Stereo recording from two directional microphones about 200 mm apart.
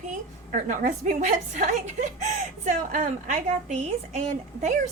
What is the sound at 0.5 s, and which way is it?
A woman's voice, 40° right (ahead or behind).